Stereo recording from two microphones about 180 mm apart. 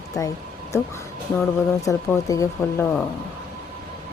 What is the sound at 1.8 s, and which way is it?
Speech, 20° left (ahead or behind).